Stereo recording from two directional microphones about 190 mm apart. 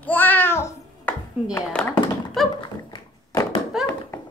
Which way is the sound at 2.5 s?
20° left (ahead or behind).